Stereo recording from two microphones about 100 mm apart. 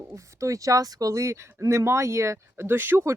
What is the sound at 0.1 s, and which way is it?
Speech, 30° right (ahead or behind).